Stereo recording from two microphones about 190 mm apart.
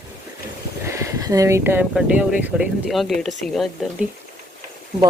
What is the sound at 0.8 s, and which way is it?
Speech, 15° right (ahead or behind).